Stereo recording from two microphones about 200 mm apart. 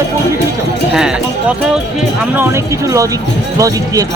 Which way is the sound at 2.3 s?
10° right (ahead or behind).